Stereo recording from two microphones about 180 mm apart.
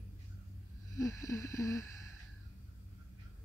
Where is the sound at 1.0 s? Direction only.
15° left (ahead or behind).